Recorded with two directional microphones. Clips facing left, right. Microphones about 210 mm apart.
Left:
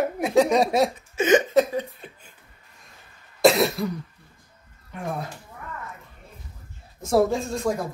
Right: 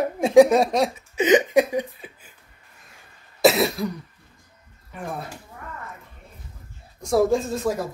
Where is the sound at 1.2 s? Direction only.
15° right (ahead or behind).